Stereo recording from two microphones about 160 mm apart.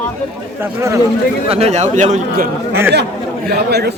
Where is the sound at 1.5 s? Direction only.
40° right (ahead or behind).